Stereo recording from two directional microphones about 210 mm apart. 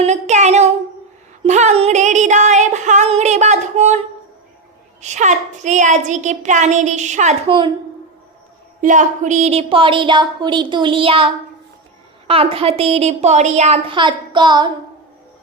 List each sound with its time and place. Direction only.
0.0 s a child's voice: 35° right (ahead or behind)
1.5 s music: 35° right (ahead or behind)
4.9 s a child's voice: 35° right (ahead or behind)
8.8 s a woman's voice: 35° right (ahead or behind)
12.3 s a woman's voice: 25° right (ahead or behind)